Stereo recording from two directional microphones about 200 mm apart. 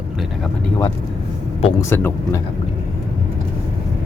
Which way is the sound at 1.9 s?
10° left (ahead or behind).